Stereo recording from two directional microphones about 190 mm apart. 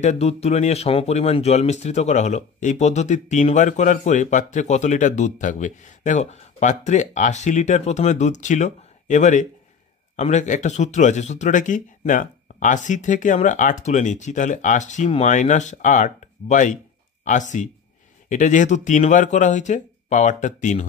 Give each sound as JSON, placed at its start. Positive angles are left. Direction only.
{"t": 0.0, "sound": "speech", "side_deg": 35}